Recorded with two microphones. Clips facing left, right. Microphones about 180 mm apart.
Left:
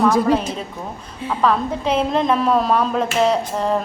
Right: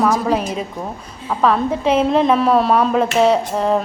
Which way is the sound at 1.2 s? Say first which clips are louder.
Right 2 dB; 5° right (ahead or behind).